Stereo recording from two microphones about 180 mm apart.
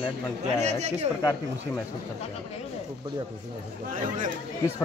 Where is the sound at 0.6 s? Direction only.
40° right (ahead or behind).